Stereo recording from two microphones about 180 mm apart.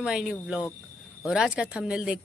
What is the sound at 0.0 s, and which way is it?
A woman's voice, 5° right (ahead or behind).